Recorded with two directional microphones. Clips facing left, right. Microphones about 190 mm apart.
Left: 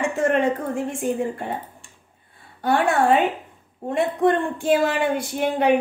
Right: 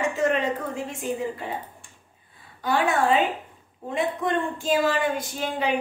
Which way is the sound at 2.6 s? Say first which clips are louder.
Left 3 dB; 60° left (ahead or behind).